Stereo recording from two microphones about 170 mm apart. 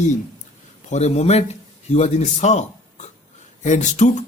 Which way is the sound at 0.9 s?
40° left (ahead or behind).